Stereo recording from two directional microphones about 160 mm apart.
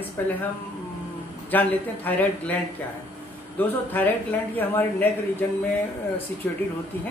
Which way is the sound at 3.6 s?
10° left (ahead or behind).